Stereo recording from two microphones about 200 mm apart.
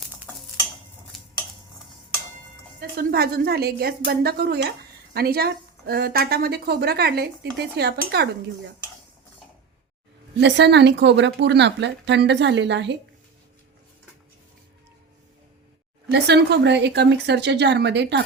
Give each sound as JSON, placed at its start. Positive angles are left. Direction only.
{"t": 1.1, "sound": "dishes", "side_deg": 0}
{"t": 2.9, "sound": "speech", "side_deg": -50}
{"t": 10.4, "sound": "speech", "side_deg": -60}
{"t": 16.1, "sound": "speech", "side_deg": -60}